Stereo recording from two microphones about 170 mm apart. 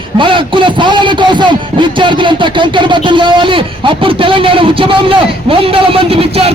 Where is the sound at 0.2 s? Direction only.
30° right (ahead or behind).